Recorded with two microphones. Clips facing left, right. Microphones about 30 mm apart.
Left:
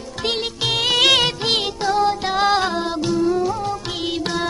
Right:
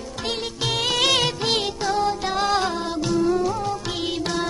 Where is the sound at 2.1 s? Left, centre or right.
Left.